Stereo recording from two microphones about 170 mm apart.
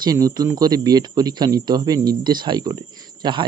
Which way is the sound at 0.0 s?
20° right (ahead or behind).